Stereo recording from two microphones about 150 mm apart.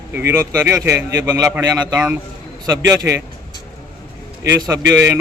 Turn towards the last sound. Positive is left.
turn(degrees=-20)  # may be behind; listen again after turning